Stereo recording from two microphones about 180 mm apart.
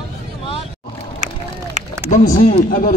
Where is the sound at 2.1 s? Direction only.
45° left (ahead or behind).